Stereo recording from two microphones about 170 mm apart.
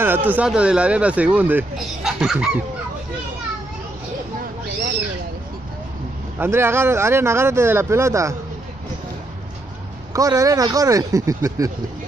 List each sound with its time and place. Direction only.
0.0 s speech: 10° right (ahead or behind)
6.3 s speech: 15° right (ahead or behind)
10.1 s speech: 20° right (ahead or behind)